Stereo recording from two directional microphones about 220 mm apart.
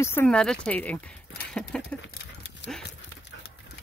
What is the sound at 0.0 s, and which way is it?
Speech, 10° left (ahead or behind).